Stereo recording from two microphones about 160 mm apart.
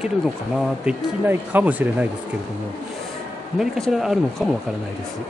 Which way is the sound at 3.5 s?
Centre (ahead or behind).